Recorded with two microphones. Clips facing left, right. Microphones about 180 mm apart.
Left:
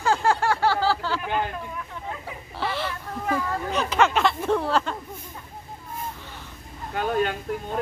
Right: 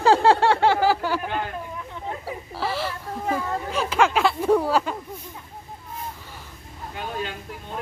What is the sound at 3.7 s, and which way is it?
Speech, 5° right (ahead or behind).